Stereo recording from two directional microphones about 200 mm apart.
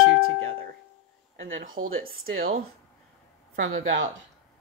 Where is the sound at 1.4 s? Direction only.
80° right.